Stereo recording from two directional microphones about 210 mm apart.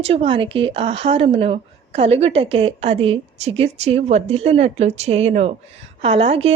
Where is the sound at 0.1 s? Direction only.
25° right (ahead or behind).